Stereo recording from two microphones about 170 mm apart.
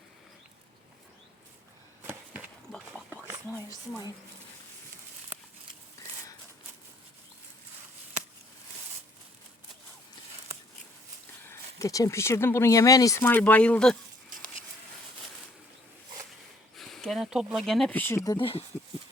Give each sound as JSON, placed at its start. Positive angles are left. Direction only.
{"t": 2.0, "sound": "chop", "side_deg": -10}
{"t": 6.0, "sound": "a sound", "side_deg": 20}
{"t": 11.4, "sound": "speech", "side_deg": 20}
{"t": 16.7, "sound": "speech", "side_deg": 0}
{"t": 18.3, "sound": "speech", "side_deg": 35}